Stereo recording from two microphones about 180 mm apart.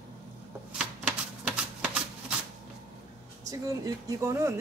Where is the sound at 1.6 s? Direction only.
5° right (ahead or behind).